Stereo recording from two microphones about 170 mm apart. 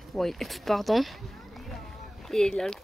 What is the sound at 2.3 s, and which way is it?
Speech, 5° left (ahead or behind).